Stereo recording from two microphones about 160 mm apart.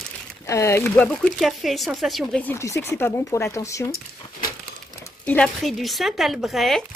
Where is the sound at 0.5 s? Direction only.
20° left (ahead or behind).